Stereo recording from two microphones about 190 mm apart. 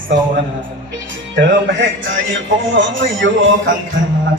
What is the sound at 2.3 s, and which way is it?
Speech, 85° right.